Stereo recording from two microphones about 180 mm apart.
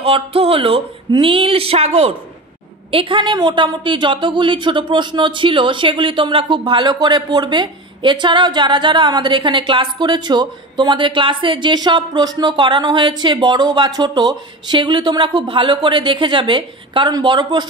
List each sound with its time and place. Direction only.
0.0 s a woman's voice: 30° right (ahead or behind)